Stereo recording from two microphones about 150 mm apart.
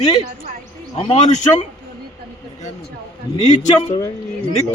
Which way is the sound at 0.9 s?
40° left (ahead or behind).